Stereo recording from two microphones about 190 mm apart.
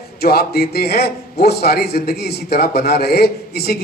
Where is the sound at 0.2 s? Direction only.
55° left (ahead or behind).